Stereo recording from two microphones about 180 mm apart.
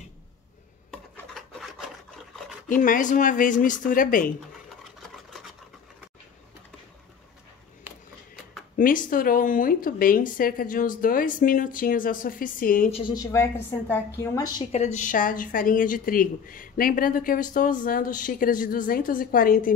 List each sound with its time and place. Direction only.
0.9 s rub: 5° left (ahead or behind)
2.7 s speech: 45° left (ahead or behind)
8.7 s speech: 50° left (ahead or behind)
12.9 s a woman's voice: 25° left (ahead or behind)
14.7 s speech: 40° left (ahead or behind)